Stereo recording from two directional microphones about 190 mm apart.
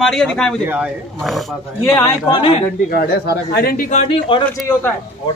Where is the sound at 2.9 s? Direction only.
55° left (ahead or behind).